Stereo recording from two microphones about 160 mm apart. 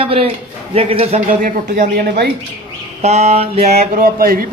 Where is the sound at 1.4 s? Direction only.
60° right (ahead or behind).